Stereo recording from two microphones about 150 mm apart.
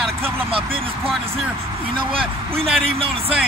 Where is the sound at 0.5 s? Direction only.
35° right (ahead or behind).